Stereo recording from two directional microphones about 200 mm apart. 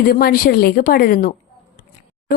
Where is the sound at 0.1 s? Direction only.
50° left (ahead or behind).